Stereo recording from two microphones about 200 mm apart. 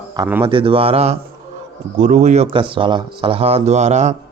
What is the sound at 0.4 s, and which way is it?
Speech, 25° right (ahead or behind).